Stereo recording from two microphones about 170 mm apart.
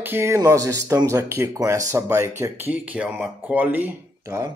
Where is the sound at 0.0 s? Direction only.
15° right (ahead or behind).